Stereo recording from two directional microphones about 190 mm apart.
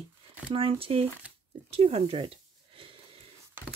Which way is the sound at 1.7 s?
30° right (ahead or behind).